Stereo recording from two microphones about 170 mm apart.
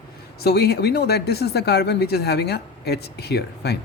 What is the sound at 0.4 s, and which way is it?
A man's voice, 70° left (ahead or behind).